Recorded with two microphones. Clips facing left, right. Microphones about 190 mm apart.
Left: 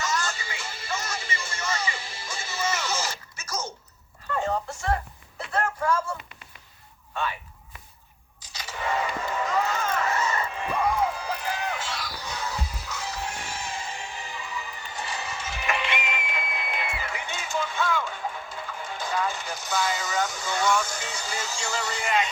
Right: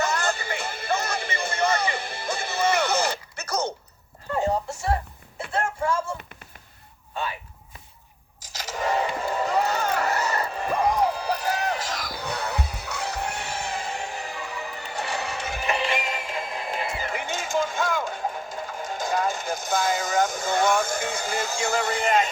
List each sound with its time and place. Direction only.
0.0 s music: 60° right (ahead or behind)
8.4 s a sound: 40° right (ahead or behind)
10.2 s music: 35° right (ahead or behind); by 15.6 s 60° right (ahead or behind)
15.6 s music: 35° right (ahead or behind)